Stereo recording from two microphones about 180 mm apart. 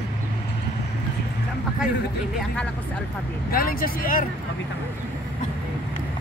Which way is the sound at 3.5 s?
55° left (ahead or behind).